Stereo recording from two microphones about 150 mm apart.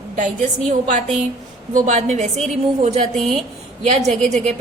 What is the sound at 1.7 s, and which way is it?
A woman's voice, 50° right (ahead or behind).